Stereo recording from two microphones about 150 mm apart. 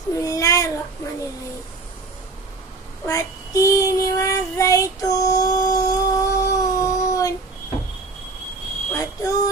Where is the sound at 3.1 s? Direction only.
20° left (ahead or behind).